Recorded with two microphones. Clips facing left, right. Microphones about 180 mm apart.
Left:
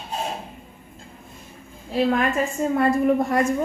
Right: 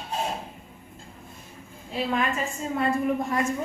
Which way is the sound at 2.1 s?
55° left (ahead or behind).